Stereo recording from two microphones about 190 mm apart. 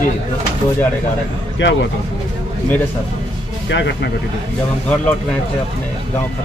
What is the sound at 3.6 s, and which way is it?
Speech, 65° left (ahead or behind).